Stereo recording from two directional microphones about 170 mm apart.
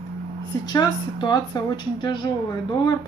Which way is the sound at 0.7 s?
25° left (ahead or behind).